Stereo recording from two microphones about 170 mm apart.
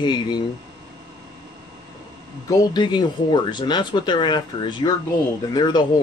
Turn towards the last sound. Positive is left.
turn(degrees=25)  # may be behind; listen again after turning